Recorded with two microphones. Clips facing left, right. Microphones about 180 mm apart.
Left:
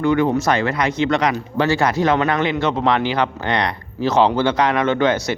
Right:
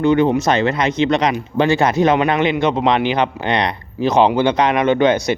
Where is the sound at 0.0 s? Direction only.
20° right (ahead or behind).